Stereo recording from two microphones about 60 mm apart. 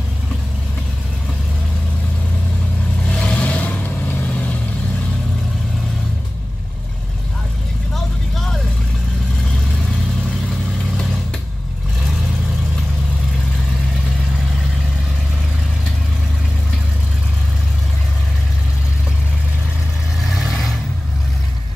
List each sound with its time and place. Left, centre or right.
3.1 s vehicle: centre
7.9 s vehicle: centre
20.2 s vehicle: centre